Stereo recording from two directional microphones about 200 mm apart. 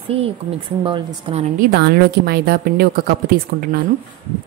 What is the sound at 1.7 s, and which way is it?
A woman's voice, 50° right (ahead or behind).